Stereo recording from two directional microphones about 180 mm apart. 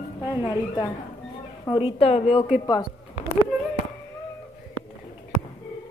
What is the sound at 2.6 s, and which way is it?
Speech, 20° left (ahead or behind).